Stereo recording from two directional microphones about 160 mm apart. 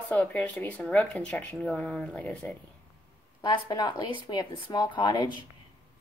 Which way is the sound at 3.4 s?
25° left (ahead or behind).